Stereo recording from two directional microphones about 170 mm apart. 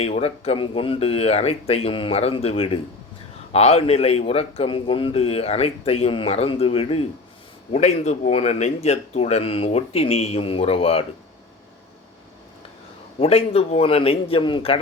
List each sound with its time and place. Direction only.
0.0 s a man's voice: 35° left (ahead or behind)
13.1 s a man's voice: 35° left (ahead or behind)